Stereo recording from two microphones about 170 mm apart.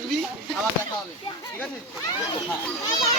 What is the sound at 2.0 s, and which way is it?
Speech, 20° left (ahead or behind).